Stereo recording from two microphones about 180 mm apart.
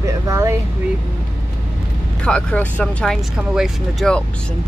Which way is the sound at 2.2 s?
5° left (ahead or behind).